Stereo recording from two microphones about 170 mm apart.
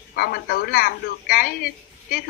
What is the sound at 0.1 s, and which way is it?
Speech, 70° left (ahead or behind).